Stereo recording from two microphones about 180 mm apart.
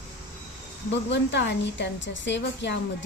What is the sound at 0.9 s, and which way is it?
A woman's voice, 75° left (ahead or behind).